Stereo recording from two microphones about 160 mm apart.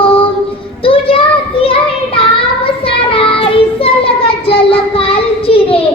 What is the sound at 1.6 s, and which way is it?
Children playing, 35° left (ahead or behind).